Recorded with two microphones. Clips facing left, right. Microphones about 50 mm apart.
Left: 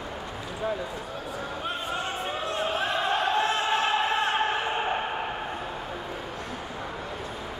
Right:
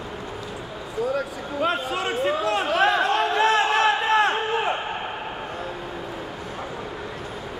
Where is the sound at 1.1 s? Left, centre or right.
Right.